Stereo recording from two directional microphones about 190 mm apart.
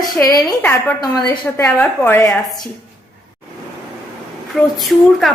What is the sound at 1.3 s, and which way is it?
A woman's voice, 20° left (ahead or behind).